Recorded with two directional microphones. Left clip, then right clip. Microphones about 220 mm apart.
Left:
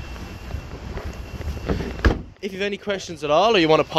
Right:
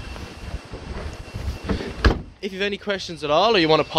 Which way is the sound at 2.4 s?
Centre (ahead or behind).